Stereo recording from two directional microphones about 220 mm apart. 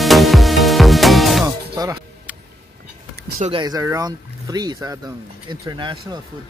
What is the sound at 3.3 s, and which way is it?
Speech, 25° right (ahead or behind).